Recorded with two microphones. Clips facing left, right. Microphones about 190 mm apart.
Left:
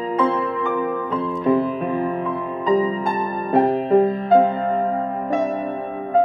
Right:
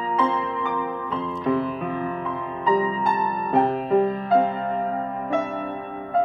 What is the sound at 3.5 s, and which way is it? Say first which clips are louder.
Music: left 4 dB; 40° left (ahead or behind).